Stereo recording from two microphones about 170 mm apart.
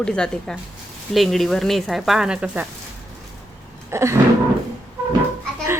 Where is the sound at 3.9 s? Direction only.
15° right (ahead or behind).